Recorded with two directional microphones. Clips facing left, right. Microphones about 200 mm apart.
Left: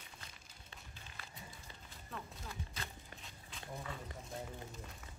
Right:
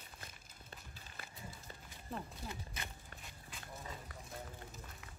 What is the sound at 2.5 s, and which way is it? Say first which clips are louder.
Walk: even; 20° right (ahead or behind).